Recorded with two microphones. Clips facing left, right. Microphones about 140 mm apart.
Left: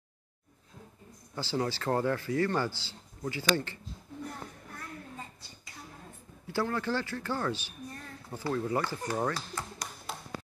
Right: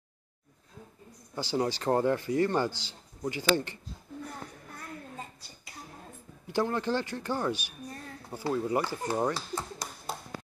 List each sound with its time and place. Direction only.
1.3 s speech: 15° right (ahead or behind)
6.4 s speech: 20° right (ahead or behind)
10.1 s tap: 40° right (ahead or behind)